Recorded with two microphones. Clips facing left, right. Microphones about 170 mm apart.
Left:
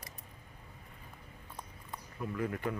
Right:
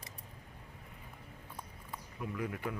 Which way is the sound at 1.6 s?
10° right (ahead or behind).